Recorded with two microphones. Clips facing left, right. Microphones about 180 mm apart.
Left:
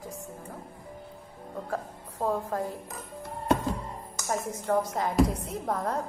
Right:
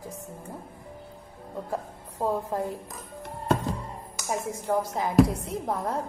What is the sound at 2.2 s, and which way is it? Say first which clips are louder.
Speech: right 1 dB; 15° right (ahead or behind).